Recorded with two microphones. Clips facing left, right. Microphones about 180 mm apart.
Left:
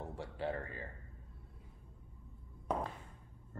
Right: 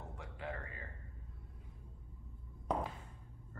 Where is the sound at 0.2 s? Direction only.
30° left (ahead or behind).